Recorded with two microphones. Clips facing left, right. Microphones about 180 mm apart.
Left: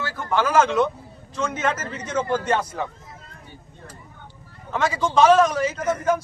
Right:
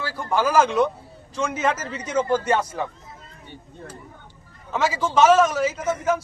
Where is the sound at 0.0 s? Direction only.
10° right (ahead or behind).